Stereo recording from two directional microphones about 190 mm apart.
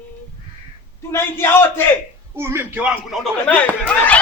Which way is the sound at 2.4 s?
15° right (ahead or behind).